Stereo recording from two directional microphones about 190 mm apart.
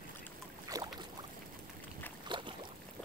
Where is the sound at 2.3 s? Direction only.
25° right (ahead or behind).